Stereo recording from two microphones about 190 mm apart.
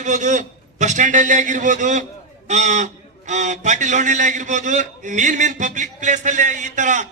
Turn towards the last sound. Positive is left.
turn(degrees=-40)  # may be behind; listen again after turning